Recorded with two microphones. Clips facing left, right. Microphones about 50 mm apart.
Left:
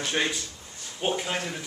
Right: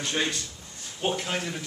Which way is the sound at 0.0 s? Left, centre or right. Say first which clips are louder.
Left 1 dB; centre.